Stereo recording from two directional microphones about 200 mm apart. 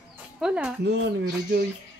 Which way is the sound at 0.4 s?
5° right (ahead or behind).